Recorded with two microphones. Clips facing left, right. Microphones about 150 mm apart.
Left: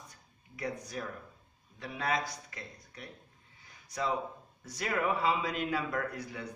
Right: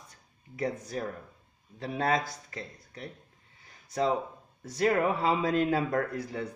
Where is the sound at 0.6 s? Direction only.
40° right (ahead or behind).